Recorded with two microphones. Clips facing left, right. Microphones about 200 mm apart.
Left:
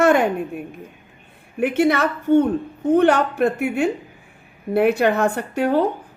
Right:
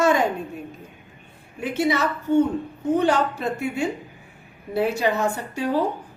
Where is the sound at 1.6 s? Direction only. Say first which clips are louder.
Left 5 dB; 60° left (ahead or behind).